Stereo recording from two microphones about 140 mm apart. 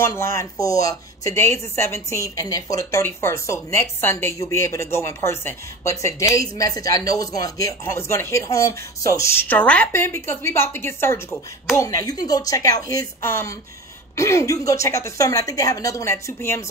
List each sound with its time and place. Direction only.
0.0 s speech: 20° left (ahead or behind)